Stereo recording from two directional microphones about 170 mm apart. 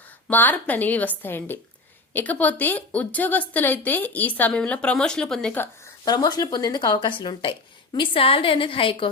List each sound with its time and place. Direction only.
0.3 s a woman's voice: 10° left (ahead or behind)
6.1 s a woman's voice: 25° left (ahead or behind)